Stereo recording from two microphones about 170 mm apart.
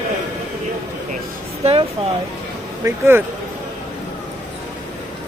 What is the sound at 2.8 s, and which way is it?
Speech, 15° right (ahead or behind).